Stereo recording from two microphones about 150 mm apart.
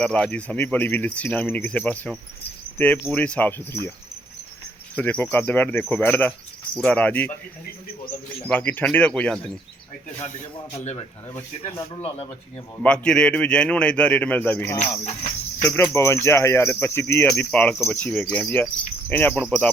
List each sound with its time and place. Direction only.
0.0 s speech: 5° left (ahead or behind)
4.9 s speech: 10° left (ahead or behind)
8.4 s speech: 10° left (ahead or behind)
11.9 s speech: 35° left (ahead or behind)
12.7 s speech: 10° left (ahead or behind)
14.8 s speech: 45° left (ahead or behind)
15.6 s speech: 15° left (ahead or behind)